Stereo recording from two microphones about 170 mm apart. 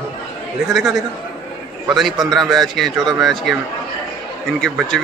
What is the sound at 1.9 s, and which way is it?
A man's voice, centre (ahead or behind).